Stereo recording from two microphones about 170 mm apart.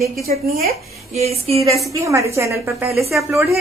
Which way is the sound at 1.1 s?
40° right (ahead or behind).